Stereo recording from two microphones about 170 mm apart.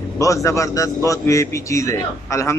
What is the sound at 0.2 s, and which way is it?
A man's voice, 20° left (ahead or behind).